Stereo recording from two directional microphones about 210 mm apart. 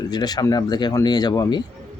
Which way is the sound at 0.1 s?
20° left (ahead or behind).